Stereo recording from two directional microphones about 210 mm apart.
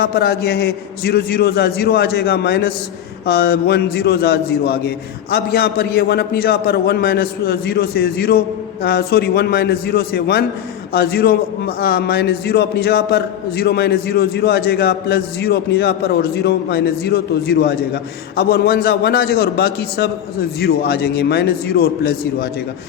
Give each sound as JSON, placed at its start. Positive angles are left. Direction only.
{"t": 0.0, "sound": "a man's voice", "side_deg": 50}